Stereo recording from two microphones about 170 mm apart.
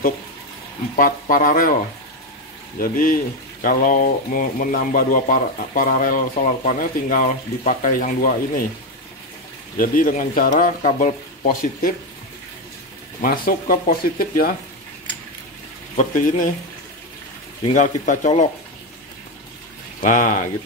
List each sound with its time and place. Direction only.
0.9 s speech: 55° left (ahead or behind)
2.8 s speech: 55° left (ahead or behind)
9.8 s speech: 55° left (ahead or behind)
13.2 s speech: 55° left (ahead or behind)
16.0 s speech: 50° left (ahead or behind)
17.7 s speech: 45° left (ahead or behind)
20.0 s speech: 50° left (ahead or behind)